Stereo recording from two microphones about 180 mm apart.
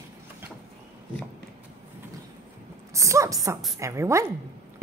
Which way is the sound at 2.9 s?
15° right (ahead or behind).